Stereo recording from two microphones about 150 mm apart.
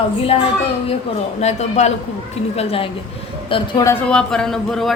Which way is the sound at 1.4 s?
50° left (ahead or behind).